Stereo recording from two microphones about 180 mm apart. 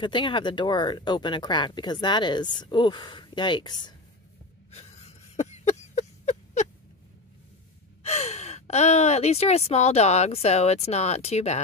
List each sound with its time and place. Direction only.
0.0 s speech: 25° left (ahead or behind)
4.6 s a sound: 35° left (ahead or behind)
8.0 s speech: 35° left (ahead or behind)